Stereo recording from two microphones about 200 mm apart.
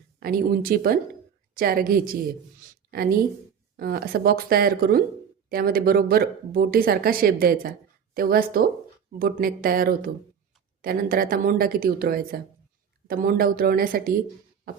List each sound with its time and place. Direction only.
0.2 s speech: 45° right (ahead or behind)
2.6 s a sound: 45° right (ahead or behind)
3.8 s speech: 50° right (ahead or behind)